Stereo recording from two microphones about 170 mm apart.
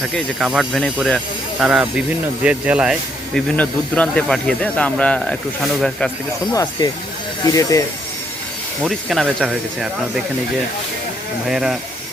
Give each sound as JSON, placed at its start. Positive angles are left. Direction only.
{"t": 0.3, "sound": "speech", "side_deg": -5}
{"t": 3.3, "sound": "speech", "side_deg": 5}
{"t": 6.5, "sound": "speech", "side_deg": 20}
{"t": 8.8, "sound": "speech", "side_deg": 0}
{"t": 11.4, "sound": "speech", "side_deg": -5}